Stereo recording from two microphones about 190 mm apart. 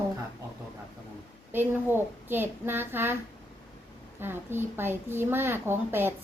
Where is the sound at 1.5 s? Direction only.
10° right (ahead or behind).